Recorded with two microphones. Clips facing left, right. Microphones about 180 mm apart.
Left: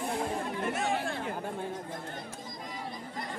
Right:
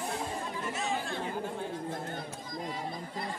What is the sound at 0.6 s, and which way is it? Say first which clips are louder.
Chatter: left 3 dB; 55° left (ahead or behind).